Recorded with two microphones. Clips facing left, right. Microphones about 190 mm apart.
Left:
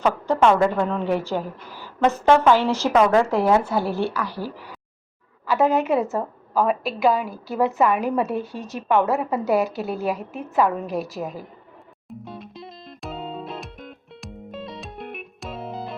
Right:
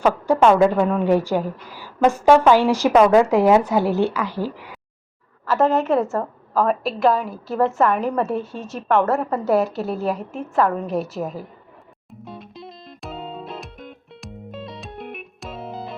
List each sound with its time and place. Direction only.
0.0 s a woman's voice: 10° right (ahead or behind)
5.5 s a woman's voice: centre (ahead or behind)
12.2 s music: centre (ahead or behind)